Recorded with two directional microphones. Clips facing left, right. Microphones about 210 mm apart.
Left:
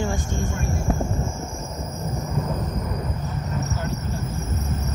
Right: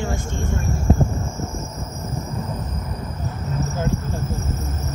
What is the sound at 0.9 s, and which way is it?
Hum, 30° right (ahead or behind).